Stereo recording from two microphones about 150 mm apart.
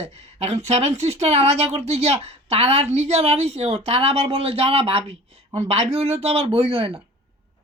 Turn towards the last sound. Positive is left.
turn(degrees=-40)  # may be behind; listen again after turning